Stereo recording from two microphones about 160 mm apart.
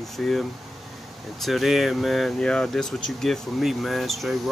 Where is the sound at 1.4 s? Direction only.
Centre (ahead or behind).